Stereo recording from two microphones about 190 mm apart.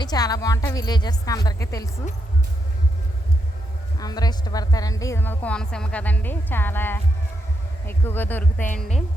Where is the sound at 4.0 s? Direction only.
20° left (ahead or behind).